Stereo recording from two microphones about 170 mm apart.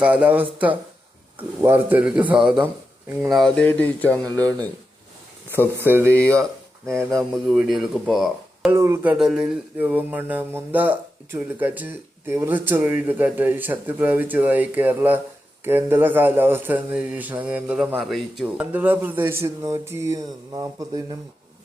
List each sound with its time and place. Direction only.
0.0 s speech: 5° right (ahead or behind); by 4.2 s 10° left (ahead or behind)
4.2 s speech: 20° right (ahead or behind)
5.7 s speech: 15° right (ahead or behind)
6.1 s speech: 5° left (ahead or behind)
8.7 s speech: 15° right (ahead or behind)
9.1 s speech: 5° right (ahead or behind); by 21.2 s 20° right (ahead or behind)